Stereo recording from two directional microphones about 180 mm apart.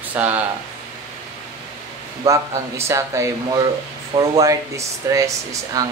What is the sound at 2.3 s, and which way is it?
Speech, 15° right (ahead or behind).